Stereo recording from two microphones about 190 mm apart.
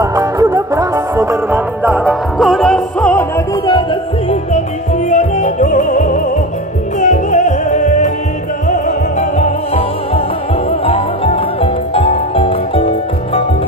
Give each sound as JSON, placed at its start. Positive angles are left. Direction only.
{"t": 0.0, "sound": "music", "side_deg": -15}
{"t": 5.1, "sound": "music", "side_deg": 40}
{"t": 9.4, "sound": "music", "side_deg": 30}